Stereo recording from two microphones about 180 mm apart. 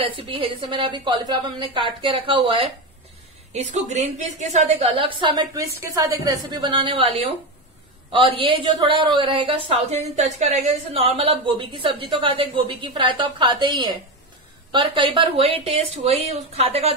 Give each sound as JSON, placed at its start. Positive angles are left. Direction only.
{"t": 0.0, "sound": "a woman's voice", "side_deg": -30}
{"t": 4.9, "sound": "a woman's voice", "side_deg": -30}